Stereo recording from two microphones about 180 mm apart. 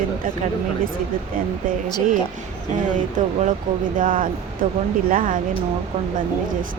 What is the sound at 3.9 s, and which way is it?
Speech, 50° right (ahead or behind).